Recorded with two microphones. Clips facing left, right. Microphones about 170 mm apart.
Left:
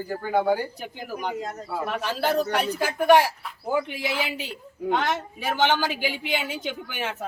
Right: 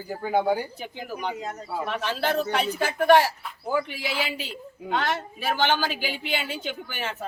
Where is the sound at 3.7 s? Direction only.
20° left (ahead or behind).